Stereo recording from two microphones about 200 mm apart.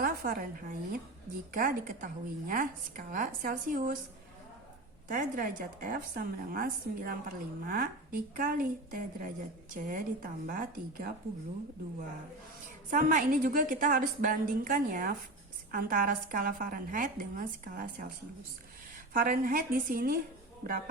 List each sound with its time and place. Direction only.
0.0 s a woman's voice: 45° right (ahead or behind)
5.0 s a woman's voice: 40° right (ahead or behind)
12.9 s a woman's voice: 40° right (ahead or behind)
19.1 s a woman's voice: 45° right (ahead or behind)